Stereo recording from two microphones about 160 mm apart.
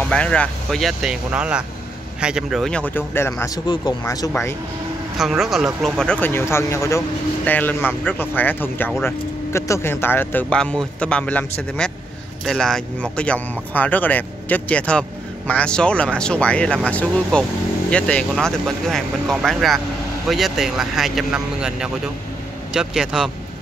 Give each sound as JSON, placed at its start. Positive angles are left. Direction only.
{"t": 0.0, "sound": "speech", "side_deg": 5}
{"t": 3.5, "sound": "speech", "side_deg": 30}
{"t": 5.1, "sound": "speech", "side_deg": 0}